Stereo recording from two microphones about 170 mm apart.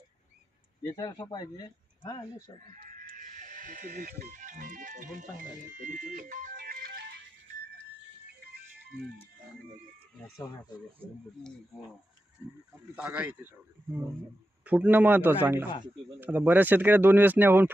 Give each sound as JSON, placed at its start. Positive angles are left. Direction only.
{"t": 0.8, "sound": "speech", "side_deg": 20}
{"t": 3.2, "sound": "speech", "side_deg": -45}
{"t": 13.0, "sound": "speech", "side_deg": -10}
{"t": 14.6, "sound": "speech", "side_deg": -10}